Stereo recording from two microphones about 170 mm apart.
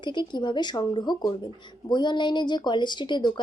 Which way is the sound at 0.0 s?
25° left (ahead or behind).